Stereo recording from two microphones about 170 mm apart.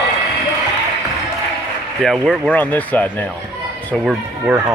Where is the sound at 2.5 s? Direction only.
10° left (ahead or behind).